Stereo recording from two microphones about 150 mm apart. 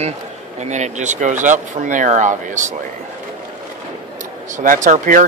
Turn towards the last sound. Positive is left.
turn(degrees=-60)  # may be behind; listen again after turning